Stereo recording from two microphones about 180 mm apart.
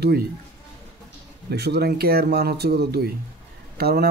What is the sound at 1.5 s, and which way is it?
A man's voice, 65° right (ahead or behind).